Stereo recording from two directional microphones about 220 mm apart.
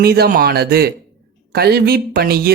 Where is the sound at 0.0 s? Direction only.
45° right (ahead or behind).